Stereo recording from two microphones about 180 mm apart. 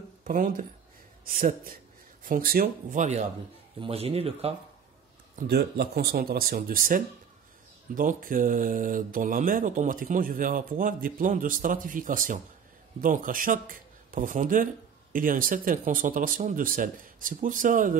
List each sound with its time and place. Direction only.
0.2 s speech: 50° right (ahead or behind); by 4.6 s 35° right (ahead or behind)
5.5 s speech: 60° right (ahead or behind)